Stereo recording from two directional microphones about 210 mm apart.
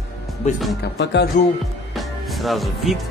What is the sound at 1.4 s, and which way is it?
Speech, 35° left (ahead or behind).